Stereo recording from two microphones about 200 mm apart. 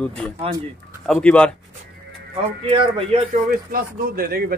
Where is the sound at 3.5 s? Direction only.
45° right (ahead or behind).